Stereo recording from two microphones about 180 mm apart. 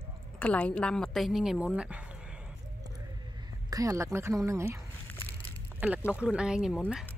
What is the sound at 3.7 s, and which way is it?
A woman's voice, 20° right (ahead or behind).